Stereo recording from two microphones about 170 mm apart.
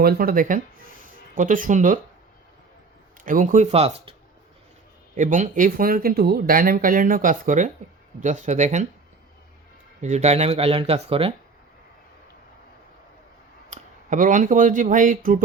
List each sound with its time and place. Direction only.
0.0 s speech: 60° right (ahead or behind)
3.2 s speech: 50° right (ahead or behind)
3.7 s speech: 35° right (ahead or behind)
5.1 s speech: 50° right (ahead or behind)
10.0 s speech: 40° right (ahead or behind)
13.7 s speech: 45° right (ahead or behind)